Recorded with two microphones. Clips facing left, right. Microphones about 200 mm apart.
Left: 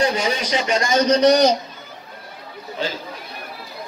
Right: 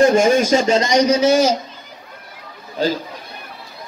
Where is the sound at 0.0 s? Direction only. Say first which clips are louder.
Right 8 dB; 50° right (ahead or behind).